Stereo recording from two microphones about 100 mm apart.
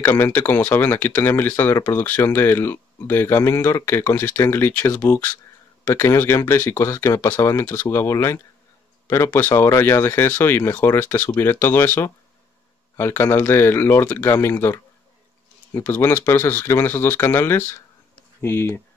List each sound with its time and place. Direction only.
0.0 s speech: 20° left (ahead or behind)
15.8 s speech: 20° left (ahead or behind)